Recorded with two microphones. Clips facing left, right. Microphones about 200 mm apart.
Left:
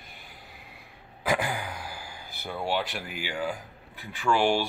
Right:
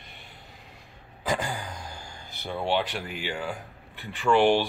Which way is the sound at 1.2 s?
15° left (ahead or behind).